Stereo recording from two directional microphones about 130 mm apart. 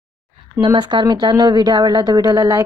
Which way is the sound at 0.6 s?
35° right (ahead or behind).